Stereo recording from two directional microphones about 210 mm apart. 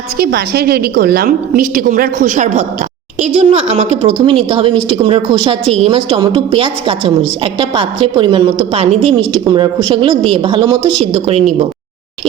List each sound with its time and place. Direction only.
0.2 s a woman's voice: 45° right (ahead or behind); by 11.5 s 30° right (ahead or behind)